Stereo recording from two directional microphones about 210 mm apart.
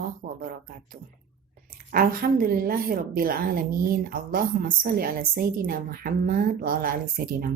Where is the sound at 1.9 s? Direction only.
45° right (ahead or behind).